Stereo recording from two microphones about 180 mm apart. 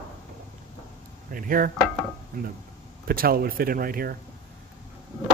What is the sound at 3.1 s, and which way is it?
A man's voice, 55° right (ahead or behind).